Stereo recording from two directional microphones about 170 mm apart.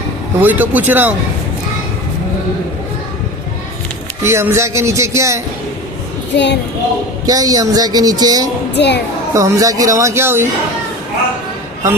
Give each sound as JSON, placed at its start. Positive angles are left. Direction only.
{"t": 0.3, "sound": "speech", "side_deg": -10}
{"t": 4.2, "sound": "speech", "side_deg": -15}
{"t": 6.3, "sound": "a child's voice", "side_deg": 90}
{"t": 7.3, "sound": "speech", "side_deg": -20}
{"t": 8.7, "sound": "speech", "side_deg": 85}
{"t": 9.3, "sound": "speech", "side_deg": -20}